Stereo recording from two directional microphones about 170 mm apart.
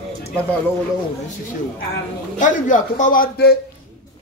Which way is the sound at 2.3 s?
50° left (ahead or behind).